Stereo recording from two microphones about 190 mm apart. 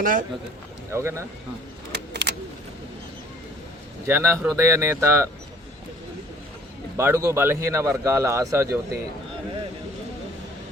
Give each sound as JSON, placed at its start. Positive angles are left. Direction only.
{"t": 0.0, "sound": "a man's voice", "side_deg": -45}
{"t": 0.9, "sound": "a man's voice", "side_deg": -15}
{"t": 1.9, "sound": "vehicle", "side_deg": -60}
{"t": 4.0, "sound": "a man's voice", "side_deg": -15}
{"t": 6.9, "sound": "a man's voice", "side_deg": -15}